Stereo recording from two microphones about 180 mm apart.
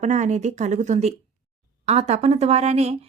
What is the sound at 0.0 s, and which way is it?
Speech, 40° right (ahead or behind).